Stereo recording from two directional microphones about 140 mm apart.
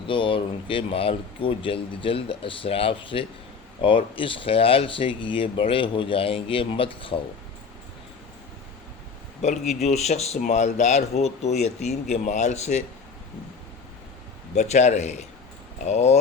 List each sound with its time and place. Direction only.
0.1 s speech: 40° left (ahead or behind)
9.4 s speech: 50° left (ahead or behind)
14.5 s speech: 55° left (ahead or behind)